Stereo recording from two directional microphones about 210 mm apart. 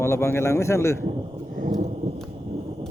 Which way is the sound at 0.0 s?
10° left (ahead or behind).